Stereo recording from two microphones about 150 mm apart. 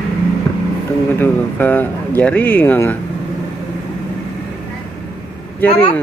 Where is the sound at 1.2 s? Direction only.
10° left (ahead or behind).